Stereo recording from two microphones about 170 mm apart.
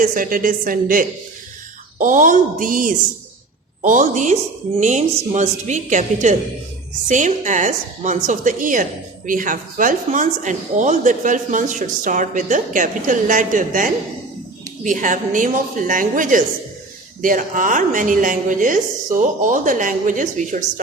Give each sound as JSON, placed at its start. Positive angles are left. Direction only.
{"t": 0.0, "sound": "a woman's voice", "side_deg": -50}